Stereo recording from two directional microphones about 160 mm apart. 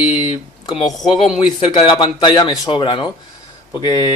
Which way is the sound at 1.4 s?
35° left (ahead or behind).